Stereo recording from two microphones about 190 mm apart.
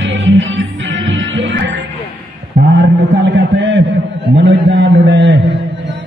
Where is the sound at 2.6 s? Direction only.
60° right (ahead or behind).